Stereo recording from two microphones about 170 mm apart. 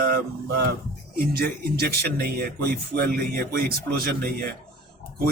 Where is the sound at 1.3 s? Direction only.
65° right (ahead or behind).